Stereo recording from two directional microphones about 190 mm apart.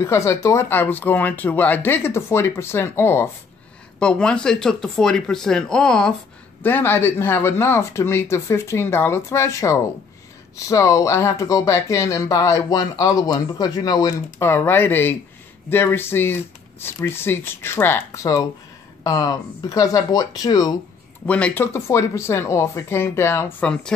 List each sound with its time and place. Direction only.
0.0 s speech: 15° left (ahead or behind)
21.3 s speech: 5° left (ahead or behind)